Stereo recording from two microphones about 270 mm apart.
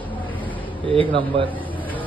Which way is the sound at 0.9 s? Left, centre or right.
Centre.